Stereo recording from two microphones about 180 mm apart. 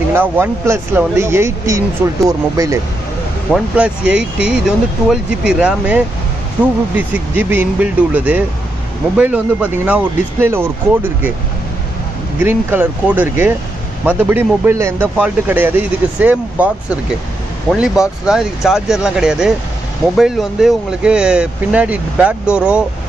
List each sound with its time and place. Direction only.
0.1 s speech: 10° right (ahead or behind)
3.5 s speech: 5° right (ahead or behind)
12.4 s speech: 10° right (ahead or behind)